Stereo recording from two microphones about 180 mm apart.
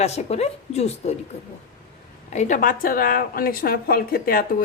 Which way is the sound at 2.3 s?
40° left (ahead or behind).